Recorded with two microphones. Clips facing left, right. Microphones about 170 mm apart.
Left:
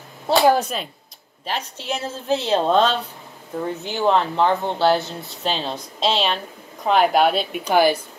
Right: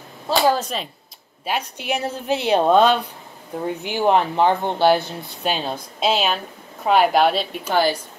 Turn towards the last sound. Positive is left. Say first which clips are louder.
# left 3 dB
turn(degrees=15)  # may be behind; listen again after turning